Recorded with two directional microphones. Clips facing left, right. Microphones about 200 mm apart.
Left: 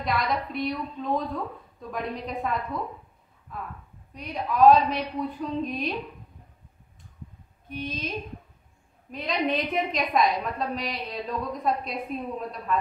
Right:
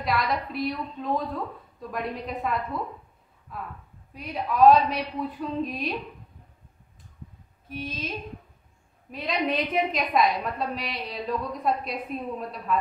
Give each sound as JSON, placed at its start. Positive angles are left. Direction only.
{"t": 0.0, "sound": "a woman's voice", "side_deg": 0}
{"t": 4.1, "sound": "a woman's voice", "side_deg": 0}
{"t": 7.6, "sound": "a woman's voice", "side_deg": 0}
{"t": 9.1, "sound": "a woman's voice", "side_deg": 0}